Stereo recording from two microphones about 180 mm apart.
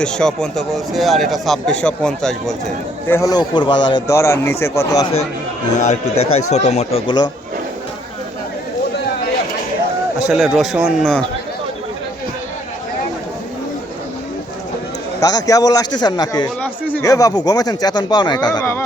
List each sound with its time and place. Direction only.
0.0 s speech: 5° left (ahead or behind)
3.1 s speech: 15° left (ahead or behind)
5.7 s speech: 40° left (ahead or behind)
10.2 s speech: 5° right (ahead or behind)
15.2 s speech: 20° left (ahead or behind)